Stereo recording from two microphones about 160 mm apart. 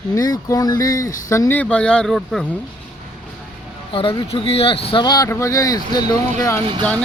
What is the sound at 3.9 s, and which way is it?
Speech, 35° left (ahead or behind).